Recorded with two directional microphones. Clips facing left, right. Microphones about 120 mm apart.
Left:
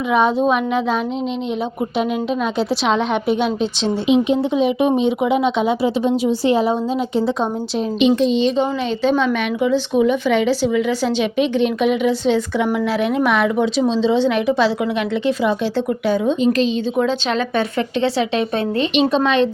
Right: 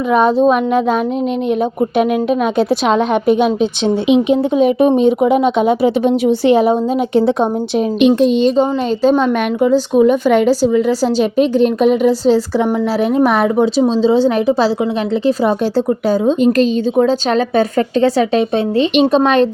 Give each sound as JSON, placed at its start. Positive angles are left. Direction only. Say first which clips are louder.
{"t": 0.1, "sound": "a woman's voice", "louder": "right 5 dB", "side_deg": -40}
{"t": 2.6, "sound": "a woman's voice", "louder": "right 3 dB", "side_deg": -45}
{"t": 8.0, "sound": "a woman's voice", "louder": "right 4 dB", "side_deg": -50}
{"t": 16.4, "sound": "a woman's voice", "louder": "right 5 dB", "side_deg": -50}